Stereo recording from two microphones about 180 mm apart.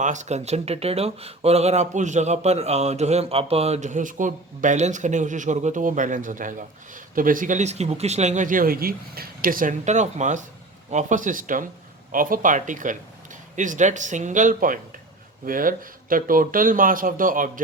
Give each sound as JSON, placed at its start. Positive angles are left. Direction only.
{"t": 0.0, "sound": "a man's voice", "side_deg": -40}